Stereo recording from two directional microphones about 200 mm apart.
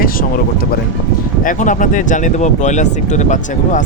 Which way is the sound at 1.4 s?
40° left (ahead or behind).